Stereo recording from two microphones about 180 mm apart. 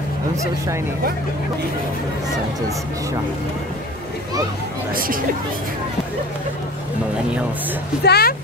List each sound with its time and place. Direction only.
4.9 s speech: 50° right (ahead or behind)
8.0 s speech: 60° left (ahead or behind)